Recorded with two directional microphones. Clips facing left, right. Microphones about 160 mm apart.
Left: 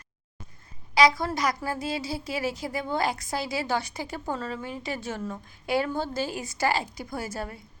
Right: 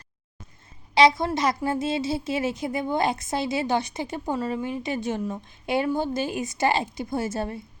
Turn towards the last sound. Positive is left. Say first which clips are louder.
# right 6 dB
turn(degrees=-25)  # may be behind; listen again after turning